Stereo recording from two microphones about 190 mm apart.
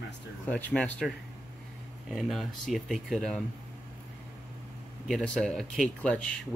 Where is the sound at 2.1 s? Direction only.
Centre (ahead or behind).